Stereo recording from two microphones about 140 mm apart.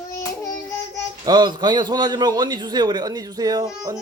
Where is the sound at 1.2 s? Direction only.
30° right (ahead or behind).